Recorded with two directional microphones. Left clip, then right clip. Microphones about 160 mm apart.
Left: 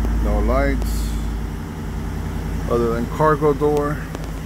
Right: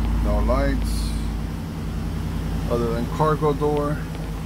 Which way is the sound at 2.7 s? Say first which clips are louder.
Left 4 dB; 15° left (ahead or behind).